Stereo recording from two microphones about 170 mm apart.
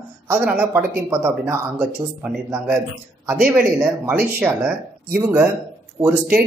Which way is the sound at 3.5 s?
10° right (ahead or behind).